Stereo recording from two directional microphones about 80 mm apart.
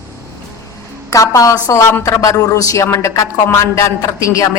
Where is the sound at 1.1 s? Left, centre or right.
Left.